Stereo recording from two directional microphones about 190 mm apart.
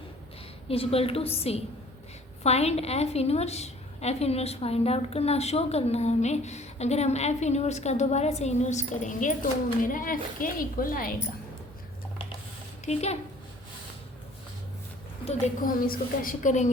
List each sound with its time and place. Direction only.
0.7 s a woman's voice: 30° left (ahead or behind); by 11.1 s 50° left (ahead or behind)
12.8 s a woman's voice: 35° left (ahead or behind)
15.6 s a woman's voice: 45° left (ahead or behind)